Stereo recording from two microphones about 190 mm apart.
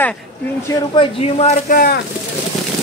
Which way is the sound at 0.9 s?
35° left (ahead or behind).